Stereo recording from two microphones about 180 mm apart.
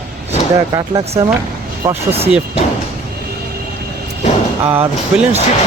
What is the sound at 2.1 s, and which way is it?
Speech, 35° right (ahead or behind).